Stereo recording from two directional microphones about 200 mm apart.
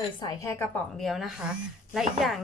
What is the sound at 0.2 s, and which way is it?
Speech, 20° left (ahead or behind).